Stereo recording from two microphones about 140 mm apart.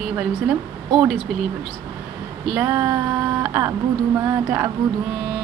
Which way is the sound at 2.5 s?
15° right (ahead or behind).